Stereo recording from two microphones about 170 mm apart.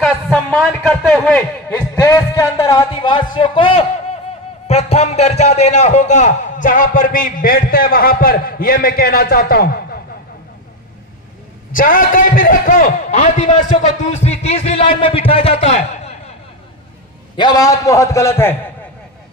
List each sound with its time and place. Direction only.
0.0 s a sound: centre (ahead or behind)
1.7 s a man's voice: 15° left (ahead or behind); by 9.8 s 65° left (ahead or behind)
11.7 s a man's voice: 55° left (ahead or behind)
17.4 s a man's voice: 20° left (ahead or behind)